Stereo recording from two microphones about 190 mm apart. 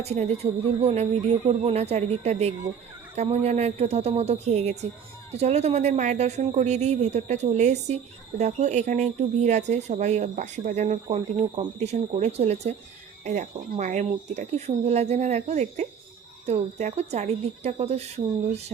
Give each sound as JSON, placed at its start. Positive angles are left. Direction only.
{"t": 0.0, "sound": "speech", "side_deg": -35}